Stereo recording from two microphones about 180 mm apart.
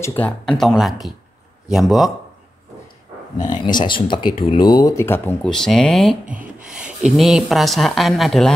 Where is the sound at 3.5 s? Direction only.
25° left (ahead or behind); by 6.1 s centre (ahead or behind).